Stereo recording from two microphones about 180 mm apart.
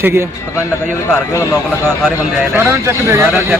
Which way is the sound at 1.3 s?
15° left (ahead or behind).